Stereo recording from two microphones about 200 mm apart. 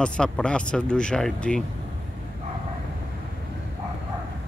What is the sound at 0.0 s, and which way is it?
Speech, 5° left (ahead or behind).